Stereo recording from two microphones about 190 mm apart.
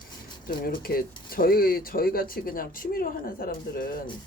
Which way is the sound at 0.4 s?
50° left (ahead or behind).